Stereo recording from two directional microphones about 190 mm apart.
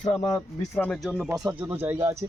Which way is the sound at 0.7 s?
5° left (ahead or behind).